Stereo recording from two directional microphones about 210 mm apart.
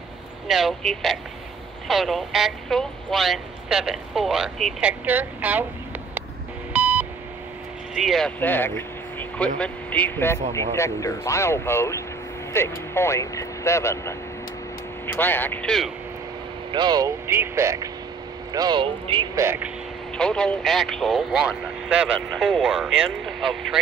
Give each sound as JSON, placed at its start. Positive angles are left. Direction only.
{"t": 0.5, "sound": "speech", "side_deg": 0}
{"t": 6.7, "sound": "beep", "side_deg": -10}
{"t": 8.0, "sound": "speech", "side_deg": 0}
{"t": 16.7, "sound": "speech", "side_deg": -20}
{"t": 19.4, "sound": "speech", "side_deg": -10}
{"t": 20.2, "sound": "speech", "side_deg": 5}